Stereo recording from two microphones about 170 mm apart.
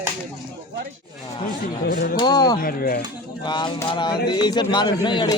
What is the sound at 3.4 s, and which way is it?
Speech, 25° left (ahead or behind).